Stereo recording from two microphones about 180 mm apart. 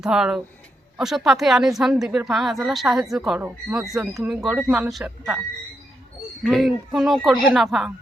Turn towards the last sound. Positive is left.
turn(degrees=0)  # may be behind; listen again after turning